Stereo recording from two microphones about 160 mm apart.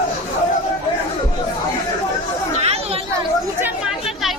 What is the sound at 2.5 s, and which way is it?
Chatter, 40° right (ahead or behind).